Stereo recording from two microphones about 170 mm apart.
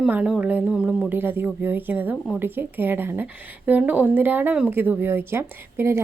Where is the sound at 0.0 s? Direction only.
5° right (ahead or behind).